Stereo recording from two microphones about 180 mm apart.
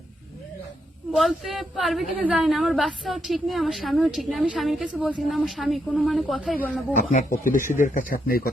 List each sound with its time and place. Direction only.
1.1 s a woman's voice: centre (ahead or behind)
7.1 s speech: 45° left (ahead or behind)